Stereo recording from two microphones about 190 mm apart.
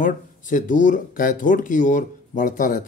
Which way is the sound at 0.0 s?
45° left (ahead or behind).